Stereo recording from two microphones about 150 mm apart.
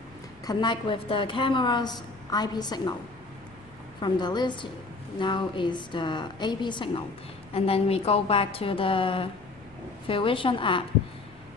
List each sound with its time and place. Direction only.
0.5 s a woman's voice: 30° left (ahead or behind)
4.0 s a woman's voice: 30° left (ahead or behind)